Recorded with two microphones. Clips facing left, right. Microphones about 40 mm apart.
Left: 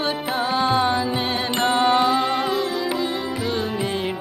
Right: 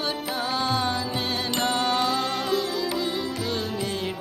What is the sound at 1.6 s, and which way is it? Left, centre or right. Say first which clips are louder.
Mantra: left 7 dB; left.